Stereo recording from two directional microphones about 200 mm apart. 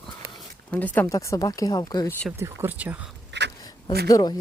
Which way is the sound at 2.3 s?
10° right (ahead or behind).